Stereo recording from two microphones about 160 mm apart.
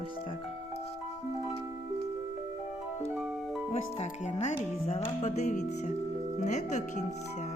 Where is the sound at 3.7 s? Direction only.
45° left (ahead or behind).